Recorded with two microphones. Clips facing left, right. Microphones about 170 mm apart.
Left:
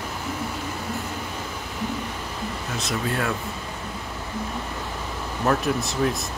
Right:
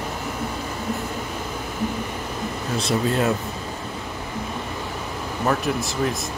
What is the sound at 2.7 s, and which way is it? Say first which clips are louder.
Speech: right 6 dB; 25° right (ahead or behind).